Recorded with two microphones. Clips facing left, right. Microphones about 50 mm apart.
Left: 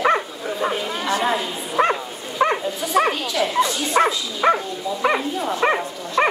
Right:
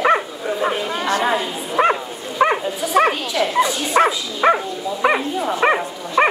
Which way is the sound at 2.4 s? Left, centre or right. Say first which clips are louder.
Right 3 dB; centre.